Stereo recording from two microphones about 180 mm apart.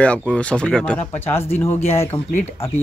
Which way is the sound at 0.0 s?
5° left (ahead or behind).